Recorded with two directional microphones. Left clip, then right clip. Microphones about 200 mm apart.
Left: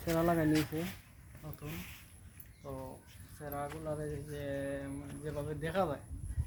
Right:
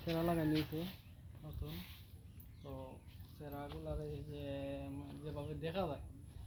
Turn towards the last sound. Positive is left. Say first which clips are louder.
# left 7 dB
turn(degrees=0)  # may be behind; listen again after turning